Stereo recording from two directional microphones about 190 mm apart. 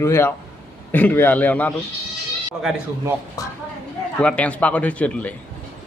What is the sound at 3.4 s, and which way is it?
Speech, 20° left (ahead or behind).